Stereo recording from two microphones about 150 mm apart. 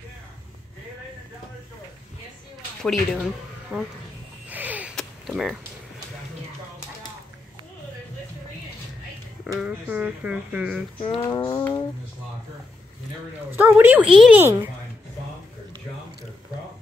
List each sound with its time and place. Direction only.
2.8 s speech: centre (ahead or behind)
3.7 s speech: 10° right (ahead or behind)
4.5 s a sound: 10° right (ahead or behind)
9.6 s speech: 10° right (ahead or behind)
11.1 s a sound: 30° left (ahead or behind)
13.5 s speech: 10° right (ahead or behind)
14.4 s speech: 15° right (ahead or behind)